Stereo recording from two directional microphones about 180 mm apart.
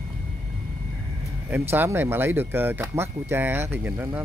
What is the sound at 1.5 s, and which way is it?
Speech, 10° right (ahead or behind).